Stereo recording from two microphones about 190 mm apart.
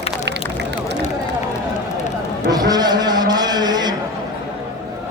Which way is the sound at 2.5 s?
20° right (ahead or behind).